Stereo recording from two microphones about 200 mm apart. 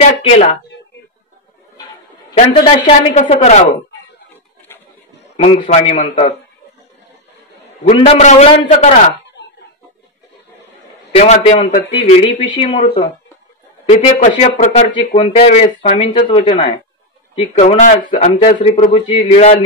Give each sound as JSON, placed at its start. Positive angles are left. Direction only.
{"t": 0.0, "sound": "a man's voice", "side_deg": 35}
{"t": 2.3, "sound": "a man's voice", "side_deg": 30}
{"t": 5.3, "sound": "a man's voice", "side_deg": 30}
{"t": 8.0, "sound": "a man's voice", "side_deg": 35}
{"t": 11.1, "sound": "a man's voice", "side_deg": 30}
{"t": 13.8, "sound": "a man's voice", "side_deg": 35}